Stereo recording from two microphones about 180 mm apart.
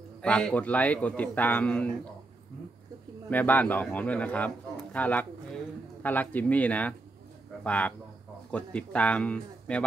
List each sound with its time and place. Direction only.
0.2 s a man's voice: 5° left (ahead or behind)
3.3 s a man's voice: 10° left (ahead or behind)